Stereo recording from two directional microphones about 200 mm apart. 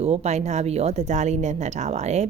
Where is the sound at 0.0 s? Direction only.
30° right (ahead or behind).